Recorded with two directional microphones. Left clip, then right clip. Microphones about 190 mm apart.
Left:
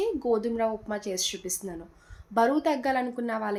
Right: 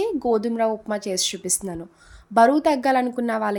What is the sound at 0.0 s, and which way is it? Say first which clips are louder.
Speech: right 5 dB; 55° right (ahead or behind).